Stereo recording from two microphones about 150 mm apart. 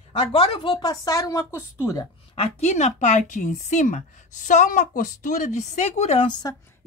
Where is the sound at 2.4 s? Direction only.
45° left (ahead or behind).